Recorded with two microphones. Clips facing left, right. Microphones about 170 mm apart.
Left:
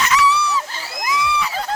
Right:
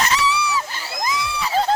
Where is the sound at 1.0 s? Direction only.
30° right (ahead or behind).